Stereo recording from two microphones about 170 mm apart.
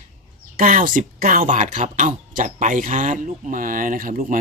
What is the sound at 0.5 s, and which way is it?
Speech, 55° right (ahead or behind).